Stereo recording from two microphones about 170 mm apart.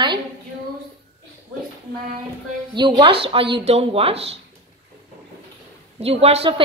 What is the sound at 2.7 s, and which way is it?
A woman's voice, 25° right (ahead or behind).